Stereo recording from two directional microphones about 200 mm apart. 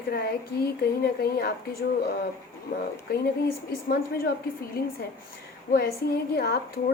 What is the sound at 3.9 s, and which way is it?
A woman's voice, 50° left (ahead or behind).